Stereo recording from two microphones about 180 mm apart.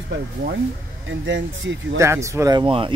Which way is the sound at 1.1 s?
90° right.